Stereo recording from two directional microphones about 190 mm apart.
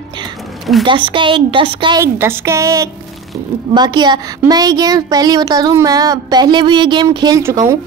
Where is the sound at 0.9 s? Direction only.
25° right (ahead or behind).